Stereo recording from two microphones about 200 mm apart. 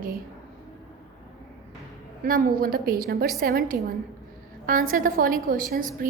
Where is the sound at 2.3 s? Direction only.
45° right (ahead or behind).